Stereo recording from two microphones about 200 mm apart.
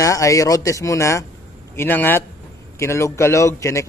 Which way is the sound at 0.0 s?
15° left (ahead or behind).